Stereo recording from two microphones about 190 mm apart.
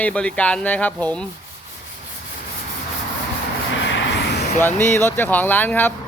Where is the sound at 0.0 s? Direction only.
5° left (ahead or behind).